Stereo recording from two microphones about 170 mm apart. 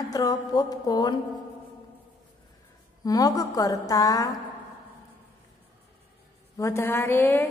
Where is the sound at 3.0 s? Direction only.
20° left (ahead or behind).